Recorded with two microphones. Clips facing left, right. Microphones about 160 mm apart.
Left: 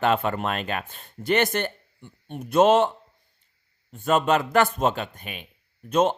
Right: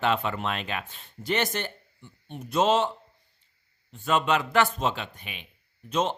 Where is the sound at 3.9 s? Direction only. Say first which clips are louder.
Left 4 dB; 45° left (ahead or behind).